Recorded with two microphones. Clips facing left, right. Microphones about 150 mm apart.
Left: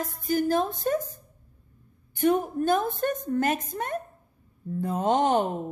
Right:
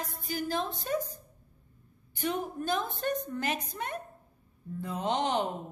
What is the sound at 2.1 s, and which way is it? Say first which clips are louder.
A woman's voice: left 9 dB; 50° left (ahead or behind).